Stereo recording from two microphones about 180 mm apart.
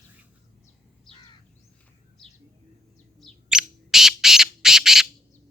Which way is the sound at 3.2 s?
Centre (ahead or behind).